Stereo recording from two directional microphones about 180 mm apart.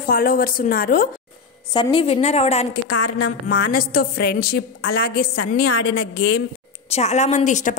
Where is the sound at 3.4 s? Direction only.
55° left (ahead or behind).